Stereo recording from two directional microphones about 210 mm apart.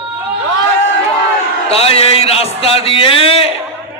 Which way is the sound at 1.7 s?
30° left (ahead or behind).